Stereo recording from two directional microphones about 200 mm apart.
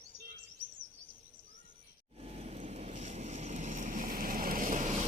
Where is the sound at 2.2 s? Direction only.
30° right (ahead or behind).